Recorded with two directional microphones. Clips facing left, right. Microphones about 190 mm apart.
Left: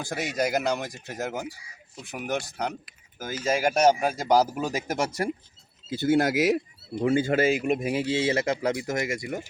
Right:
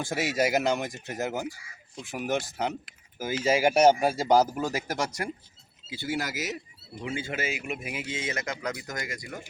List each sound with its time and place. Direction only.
0.0 s speech: centre (ahead or behind)
4.5 s speech: 15° left (ahead or behind)
5.9 s speech: 50° left (ahead or behind); by 9.4 s 25° left (ahead or behind)